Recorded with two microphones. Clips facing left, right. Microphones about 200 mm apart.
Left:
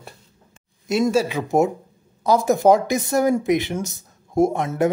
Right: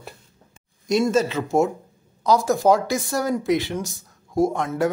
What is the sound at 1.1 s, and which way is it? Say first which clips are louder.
Speech: left 1 dB; 15° left (ahead or behind).